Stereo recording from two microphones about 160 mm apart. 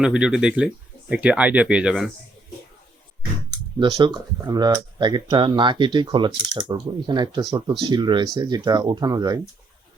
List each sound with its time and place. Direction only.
0.0 s speech: 5° right (ahead or behind)
3.8 s speech: 30° right (ahead or behind)